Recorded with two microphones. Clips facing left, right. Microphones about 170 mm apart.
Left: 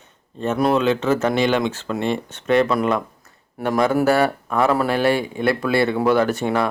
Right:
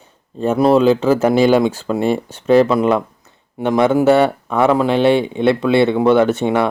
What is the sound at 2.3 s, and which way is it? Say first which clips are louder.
Speech: right 6 dB; 30° right (ahead or behind).